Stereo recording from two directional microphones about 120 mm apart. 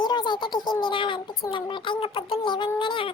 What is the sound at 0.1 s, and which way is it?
A child's voice, 40° left (ahead or behind).